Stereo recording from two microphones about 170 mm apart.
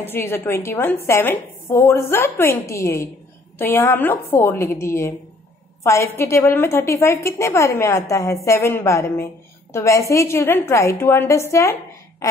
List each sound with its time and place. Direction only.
0.0 s a woman's voice: 15° left (ahead or behind)